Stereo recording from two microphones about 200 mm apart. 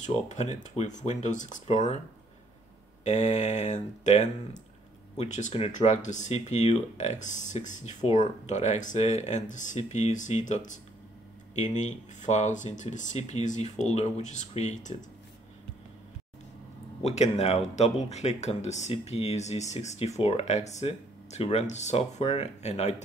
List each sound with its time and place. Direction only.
0.0 s speech: 35° left (ahead or behind)
3.0 s speech: 35° left (ahead or behind)
17.0 s speech: 35° left (ahead or behind)